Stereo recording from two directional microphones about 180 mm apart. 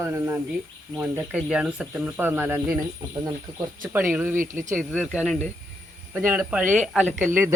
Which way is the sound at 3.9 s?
10° right (ahead or behind).